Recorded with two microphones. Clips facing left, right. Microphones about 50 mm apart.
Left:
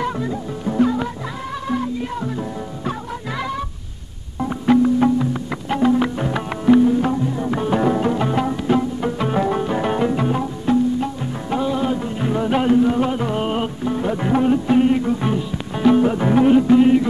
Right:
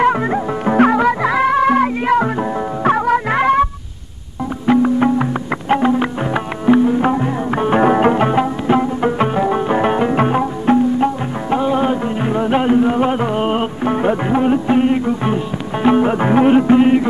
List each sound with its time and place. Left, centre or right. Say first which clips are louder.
0.0 s music: right 9 dB; right
2.8 s music: right 16 dB; right
4.8 s music: right 2 dB; right
7.0 s music: right 4 dB; right
9.3 s music: right 3 dB; centre
9.7 s music: right 4 dB; right
10.1 s music: right 6 dB; right
13.8 s music: right 7 dB; right
14.1 s music: right 2 dB; right